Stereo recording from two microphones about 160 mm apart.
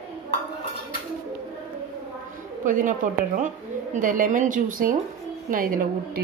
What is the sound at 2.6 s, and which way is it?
A woman's voice, 55° right (ahead or behind).